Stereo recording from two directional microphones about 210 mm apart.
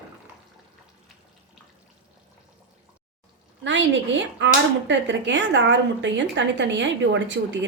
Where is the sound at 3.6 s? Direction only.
60° right (ahead or behind).